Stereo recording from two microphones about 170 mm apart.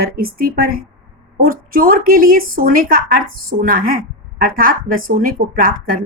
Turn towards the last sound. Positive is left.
turn(degrees=-55)  # may be behind; listen again after turning